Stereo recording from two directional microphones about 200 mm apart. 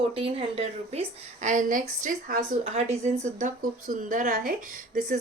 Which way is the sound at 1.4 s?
40° right (ahead or behind).